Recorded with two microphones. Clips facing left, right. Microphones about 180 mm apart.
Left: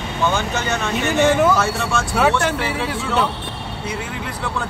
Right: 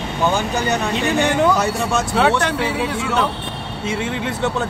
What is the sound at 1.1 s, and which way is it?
Speech, centre (ahead or behind).